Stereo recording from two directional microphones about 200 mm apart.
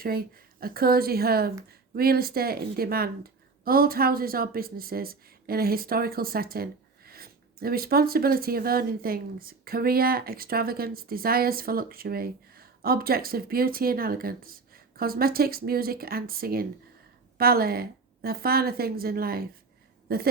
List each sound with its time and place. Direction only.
0.0 s speech: 50° right (ahead or behind)